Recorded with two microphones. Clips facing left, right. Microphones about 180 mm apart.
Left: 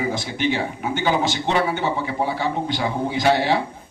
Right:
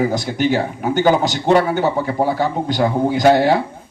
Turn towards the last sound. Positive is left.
turn(degrees=-45)  # may be behind; listen again after turning